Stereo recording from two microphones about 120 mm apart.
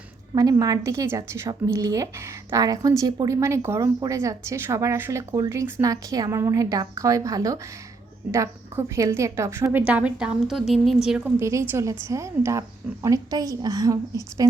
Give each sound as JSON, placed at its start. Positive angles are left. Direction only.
{"t": 0.3, "sound": "a woman's voice", "side_deg": -30}
{"t": 9.8, "sound": "a woman's voice", "side_deg": -10}
{"t": 11.3, "sound": "a woman's voice", "side_deg": -25}